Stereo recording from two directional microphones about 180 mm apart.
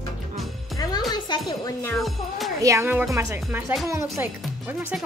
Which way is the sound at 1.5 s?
20° left (ahead or behind).